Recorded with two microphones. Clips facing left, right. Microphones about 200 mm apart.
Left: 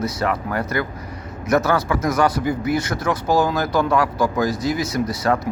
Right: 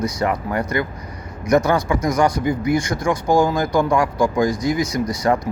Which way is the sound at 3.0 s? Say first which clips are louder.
Right 2 dB; 15° right (ahead or behind).